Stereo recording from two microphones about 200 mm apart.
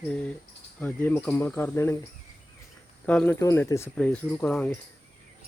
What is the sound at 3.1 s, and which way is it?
Speech, 10° left (ahead or behind).